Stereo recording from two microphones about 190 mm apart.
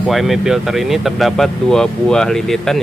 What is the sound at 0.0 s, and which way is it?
Speech, centre (ahead or behind).